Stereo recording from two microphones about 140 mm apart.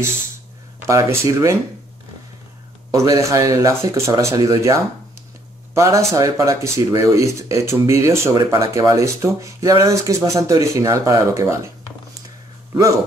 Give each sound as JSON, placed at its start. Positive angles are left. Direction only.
{"t": 0.8, "sound": "speech", "side_deg": -20}
{"t": 2.9, "sound": "speech", "side_deg": -20}
{"t": 5.8, "sound": "speech", "side_deg": -20}